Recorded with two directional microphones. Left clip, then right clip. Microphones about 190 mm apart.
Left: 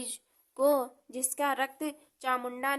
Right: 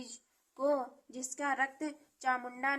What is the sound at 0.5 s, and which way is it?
A woman's voice, 30° left (ahead or behind).